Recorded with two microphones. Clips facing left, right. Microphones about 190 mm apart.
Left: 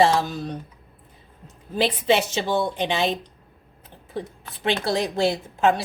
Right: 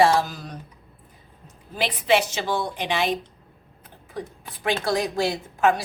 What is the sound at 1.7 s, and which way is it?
A woman's voice, 25° left (ahead or behind).